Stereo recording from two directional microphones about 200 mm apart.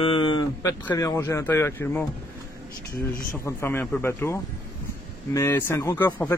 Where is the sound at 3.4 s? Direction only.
10° left (ahead or behind).